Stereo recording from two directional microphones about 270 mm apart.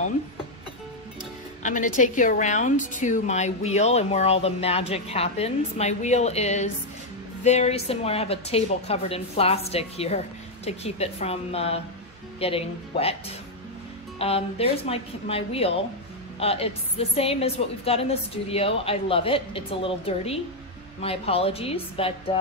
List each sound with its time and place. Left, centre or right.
1.6 s a woman's voice: left
14.1 s a woman's voice: left